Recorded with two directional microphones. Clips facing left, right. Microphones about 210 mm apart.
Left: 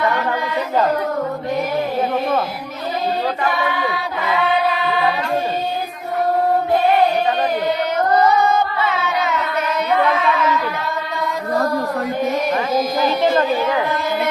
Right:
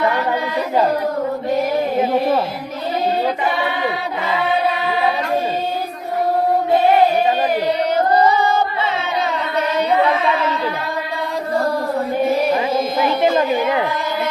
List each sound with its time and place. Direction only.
3.4 s a woman's voice: 20° right (ahead or behind)
7.9 s singing: 30° right (ahead or behind)
12.3 s music: 30° right (ahead or behind)
13.3 s a woman's voice: 20° right (ahead or behind)